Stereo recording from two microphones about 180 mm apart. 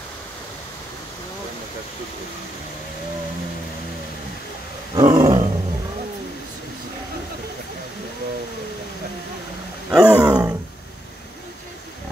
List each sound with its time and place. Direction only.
4.9 s roar: 20° right (ahead or behind)
9.8 s roar: 5° right (ahead or behind)